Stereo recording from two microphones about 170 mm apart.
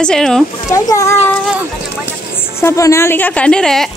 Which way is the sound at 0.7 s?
20° left (ahead or behind).